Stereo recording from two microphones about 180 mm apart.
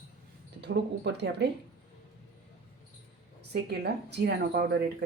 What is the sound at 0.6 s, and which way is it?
Speech, 70° right (ahead or behind).